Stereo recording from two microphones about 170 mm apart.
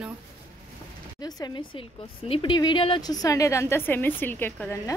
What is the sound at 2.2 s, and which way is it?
A woman's voice, 30° left (ahead or behind).